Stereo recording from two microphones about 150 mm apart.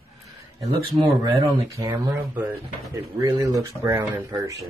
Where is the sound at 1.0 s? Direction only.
30° right (ahead or behind).